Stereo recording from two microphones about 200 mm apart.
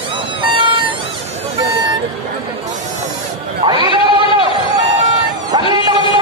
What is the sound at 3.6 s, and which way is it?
Bleat, 20° right (ahead or behind).